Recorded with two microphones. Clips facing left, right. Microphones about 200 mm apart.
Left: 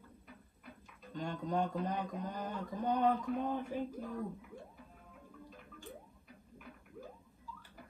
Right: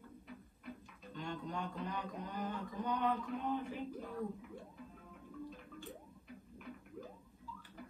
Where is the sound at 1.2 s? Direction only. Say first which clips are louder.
Left 7 dB; 45° left (ahead or behind).